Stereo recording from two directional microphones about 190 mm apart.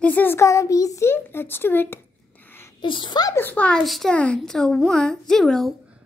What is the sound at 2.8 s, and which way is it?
A woman's voice, 25° left (ahead or behind).